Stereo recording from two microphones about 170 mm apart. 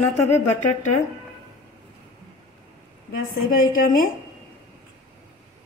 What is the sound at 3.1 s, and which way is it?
A woman's voice, 55° left (ahead or behind).